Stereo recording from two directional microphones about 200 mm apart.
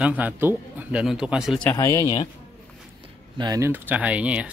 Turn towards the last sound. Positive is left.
turn(degrees=-5)  # may be behind; listen again after turning